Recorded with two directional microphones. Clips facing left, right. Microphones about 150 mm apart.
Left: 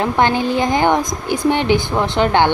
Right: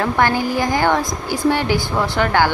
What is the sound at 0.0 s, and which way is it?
A woman's voice, 20° left (ahead or behind).